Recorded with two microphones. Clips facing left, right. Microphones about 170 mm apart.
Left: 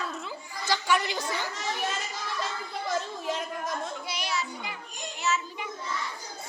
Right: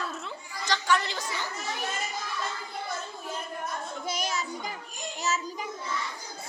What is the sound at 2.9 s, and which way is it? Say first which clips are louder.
Chatter: left 9 dB; 90° left.